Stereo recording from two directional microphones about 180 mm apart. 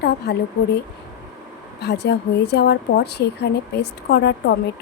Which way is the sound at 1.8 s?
70° left (ahead or behind).